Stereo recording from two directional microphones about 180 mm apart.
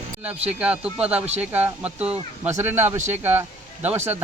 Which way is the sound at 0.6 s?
5° right (ahead or behind).